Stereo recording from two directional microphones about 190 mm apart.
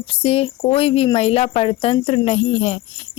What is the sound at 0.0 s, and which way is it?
Speech, 30° left (ahead or behind).